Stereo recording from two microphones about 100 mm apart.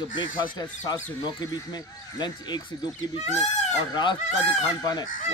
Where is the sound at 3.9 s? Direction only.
50° left (ahead or behind).